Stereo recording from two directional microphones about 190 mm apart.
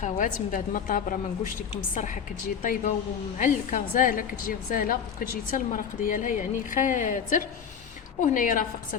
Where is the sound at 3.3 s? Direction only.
45° left (ahead or behind).